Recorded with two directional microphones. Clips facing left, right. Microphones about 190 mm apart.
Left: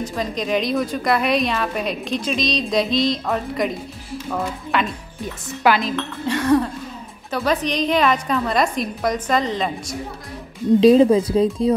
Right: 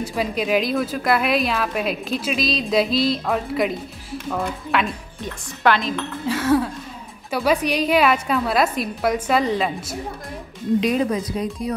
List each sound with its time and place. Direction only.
0.0 s a woman's voice: 10° right (ahead or behind)
10.8 s speech: 30° left (ahead or behind)